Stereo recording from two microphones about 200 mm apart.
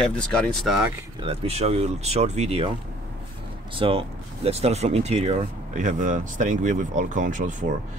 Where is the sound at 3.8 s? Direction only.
25° right (ahead or behind).